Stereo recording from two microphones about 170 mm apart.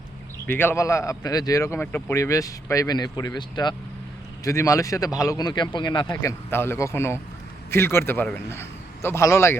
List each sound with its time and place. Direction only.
0.4 s a man's voice: 15° left (ahead or behind)
6.5 s a man's voice: 15° left (ahead or behind)